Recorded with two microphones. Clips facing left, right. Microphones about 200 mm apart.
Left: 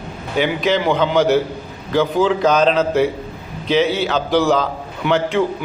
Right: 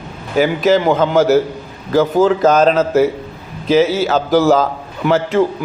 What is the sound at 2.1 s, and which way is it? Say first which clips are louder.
Speech: right 4 dB; 45° right (ahead or behind).